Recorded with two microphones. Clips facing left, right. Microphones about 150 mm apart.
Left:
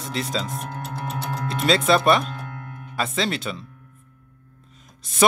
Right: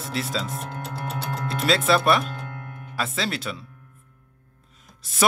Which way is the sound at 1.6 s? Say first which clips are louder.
Left 2 dB; centre (ahead or behind).